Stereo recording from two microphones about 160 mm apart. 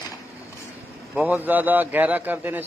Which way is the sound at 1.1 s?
10° right (ahead or behind).